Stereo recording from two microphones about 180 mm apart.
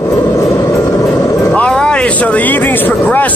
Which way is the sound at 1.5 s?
5° left (ahead or behind).